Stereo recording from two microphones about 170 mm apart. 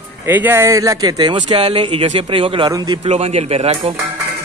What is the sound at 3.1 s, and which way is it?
Speech, 35° right (ahead or behind).